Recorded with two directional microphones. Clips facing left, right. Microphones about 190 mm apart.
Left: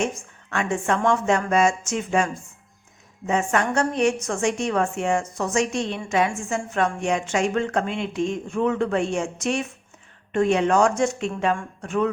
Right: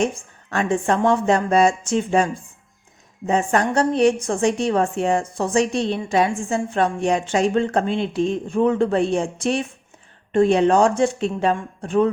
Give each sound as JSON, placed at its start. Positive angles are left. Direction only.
{"t": 0.0, "sound": "a woman's voice", "side_deg": -35}